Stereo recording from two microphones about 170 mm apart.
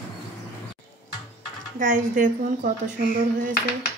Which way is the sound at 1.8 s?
50° right (ahead or behind).